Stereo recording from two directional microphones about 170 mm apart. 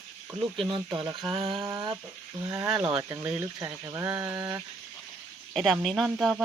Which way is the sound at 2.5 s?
15° right (ahead or behind).